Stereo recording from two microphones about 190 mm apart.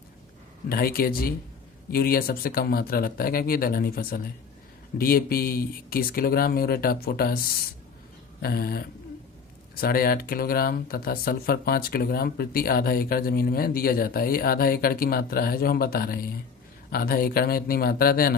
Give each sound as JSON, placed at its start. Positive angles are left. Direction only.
{"t": 0.7, "sound": "speech", "side_deg": 50}
{"t": 8.4, "sound": "speech", "side_deg": 55}
{"t": 9.8, "sound": "speech", "side_deg": 50}